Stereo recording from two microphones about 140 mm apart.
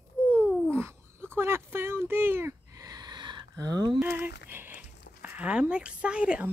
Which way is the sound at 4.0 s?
15° right (ahead or behind).